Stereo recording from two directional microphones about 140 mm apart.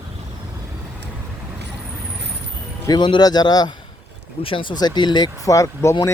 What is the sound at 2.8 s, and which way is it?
Speech, 30° left (ahead or behind).